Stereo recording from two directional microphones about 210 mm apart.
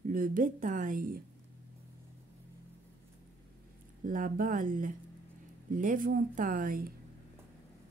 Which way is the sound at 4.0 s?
40° right (ahead or behind).